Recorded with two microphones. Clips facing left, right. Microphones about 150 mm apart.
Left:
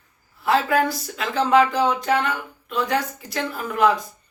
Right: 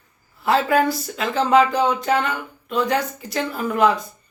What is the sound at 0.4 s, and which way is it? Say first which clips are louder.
Speech: right 2 dB; centre (ahead or behind).